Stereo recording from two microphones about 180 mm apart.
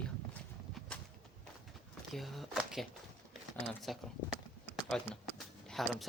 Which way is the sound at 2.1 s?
Centre (ahead or behind).